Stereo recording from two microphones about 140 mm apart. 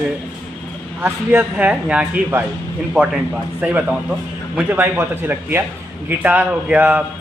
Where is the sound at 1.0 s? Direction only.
10° right (ahead or behind).